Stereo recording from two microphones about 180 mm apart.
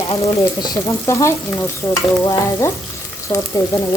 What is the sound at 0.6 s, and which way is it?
Stir, 15° left (ahead or behind).